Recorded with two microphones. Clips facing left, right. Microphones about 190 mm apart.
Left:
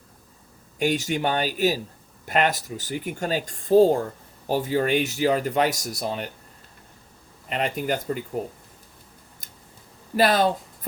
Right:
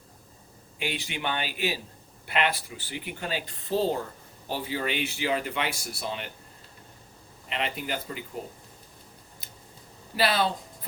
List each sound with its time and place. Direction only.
0.8 s speech: 45° left (ahead or behind)
7.5 s speech: 45° left (ahead or behind)
9.4 s scissors: 45° left (ahead or behind)
10.2 s speech: 45° left (ahead or behind)